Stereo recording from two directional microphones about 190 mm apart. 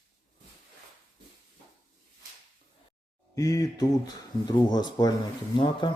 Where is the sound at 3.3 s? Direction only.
20° left (ahead or behind).